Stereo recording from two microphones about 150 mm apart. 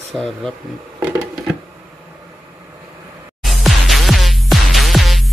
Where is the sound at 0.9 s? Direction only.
15° right (ahead or behind).